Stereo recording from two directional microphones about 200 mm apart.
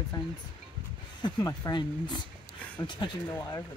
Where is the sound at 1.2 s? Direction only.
20° left (ahead or behind).